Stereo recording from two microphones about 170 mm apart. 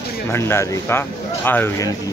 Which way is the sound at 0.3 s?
15° left (ahead or behind).